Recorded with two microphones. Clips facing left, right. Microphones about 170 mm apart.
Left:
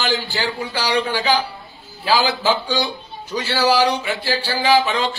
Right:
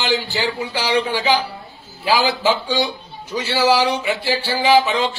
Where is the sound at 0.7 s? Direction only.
20° right (ahead or behind).